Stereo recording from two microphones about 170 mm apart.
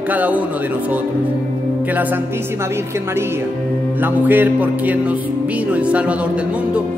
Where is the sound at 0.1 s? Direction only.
10° right (ahead or behind).